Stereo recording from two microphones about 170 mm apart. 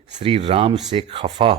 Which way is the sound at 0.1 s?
35° right (ahead or behind).